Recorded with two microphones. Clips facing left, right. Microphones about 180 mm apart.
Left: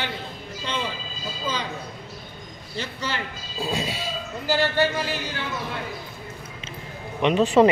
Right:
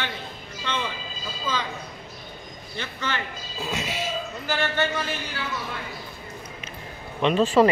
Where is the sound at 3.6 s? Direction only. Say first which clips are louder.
Left 2 dB; 35° left (ahead or behind).